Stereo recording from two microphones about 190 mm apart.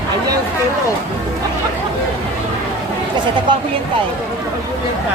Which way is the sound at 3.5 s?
25° right (ahead or behind).